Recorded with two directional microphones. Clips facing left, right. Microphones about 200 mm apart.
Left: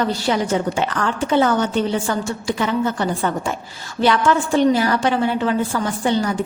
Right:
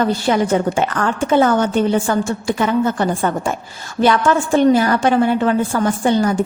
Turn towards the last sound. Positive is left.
turn(degrees=-50)  # may be behind; listen again after turning